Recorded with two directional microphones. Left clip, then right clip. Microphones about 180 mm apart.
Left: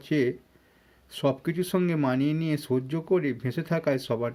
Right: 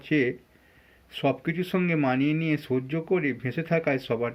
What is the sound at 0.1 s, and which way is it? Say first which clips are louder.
Speech: right 1 dB; 40° left (ahead or behind).